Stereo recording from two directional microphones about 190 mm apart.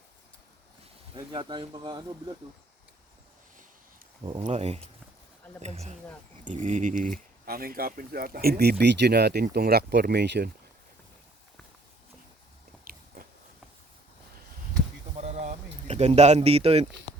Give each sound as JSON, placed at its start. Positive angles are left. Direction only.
{"t": 1.1, "sound": "speech", "side_deg": -25}
{"t": 4.4, "sound": "speech", "side_deg": -35}
{"t": 12.8, "sound": "biting", "side_deg": -50}
{"t": 15.1, "sound": "a sound", "side_deg": -35}